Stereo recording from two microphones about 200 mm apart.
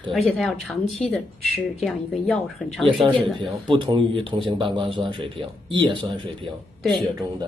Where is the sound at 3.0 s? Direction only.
25° right (ahead or behind).